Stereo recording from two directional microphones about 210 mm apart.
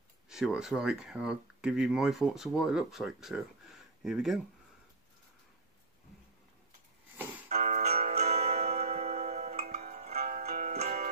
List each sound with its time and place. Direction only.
0.3 s speech: centre (ahead or behind)
7.4 s music: 35° right (ahead or behind)